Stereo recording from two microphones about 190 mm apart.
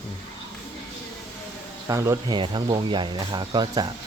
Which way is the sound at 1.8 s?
15° right (ahead or behind).